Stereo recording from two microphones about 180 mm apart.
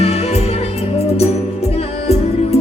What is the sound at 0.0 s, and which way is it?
Music, 35° left (ahead or behind).